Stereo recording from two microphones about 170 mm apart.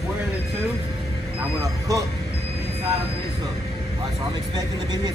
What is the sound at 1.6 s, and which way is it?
Speech, 20° right (ahead or behind).